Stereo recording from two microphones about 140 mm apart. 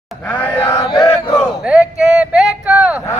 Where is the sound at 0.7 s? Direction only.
45° left (ahead or behind).